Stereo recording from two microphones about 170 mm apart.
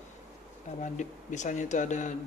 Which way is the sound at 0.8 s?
45° left (ahead or behind).